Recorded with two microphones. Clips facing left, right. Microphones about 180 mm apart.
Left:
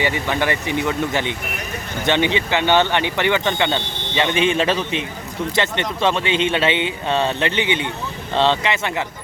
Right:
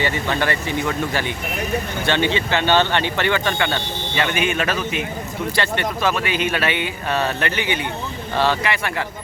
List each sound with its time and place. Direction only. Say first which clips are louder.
0.0 s speech: left 1 dB; 15° left (ahead or behind)